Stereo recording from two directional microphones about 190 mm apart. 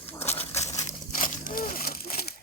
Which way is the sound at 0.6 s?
40° left (ahead or behind).